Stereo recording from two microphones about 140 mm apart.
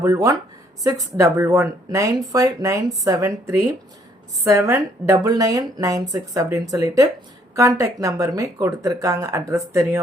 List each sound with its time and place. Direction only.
0.0 s speech: 25° right (ahead or behind)